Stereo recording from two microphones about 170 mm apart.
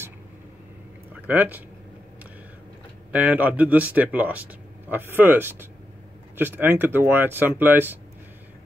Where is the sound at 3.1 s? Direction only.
10° right (ahead or behind).